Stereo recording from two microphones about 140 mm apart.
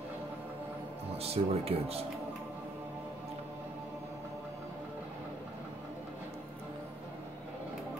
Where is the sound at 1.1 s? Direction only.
45° right (ahead or behind).